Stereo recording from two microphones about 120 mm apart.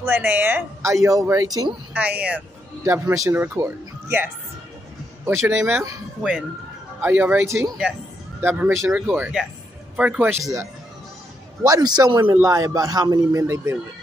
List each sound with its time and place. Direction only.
0.0 s a woman's voice: 20° right (ahead or behind)
2.0 s a woman's voice: 10° right (ahead or behind)
2.8 s a man's voice: 25° right (ahead or behind)
7.0 s a woman's voice: 15° right (ahead or behind)
10.4 s a man's voice: 25° right (ahead or behind)
12.2 s a man's voice: 20° right (ahead or behind)